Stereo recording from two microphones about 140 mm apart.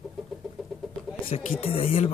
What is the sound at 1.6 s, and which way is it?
Speech, 45° left (ahead or behind).